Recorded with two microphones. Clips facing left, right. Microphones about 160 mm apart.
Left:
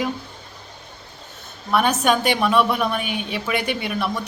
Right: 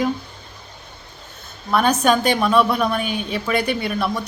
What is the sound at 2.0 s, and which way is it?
A woman's voice, 40° right (ahead or behind).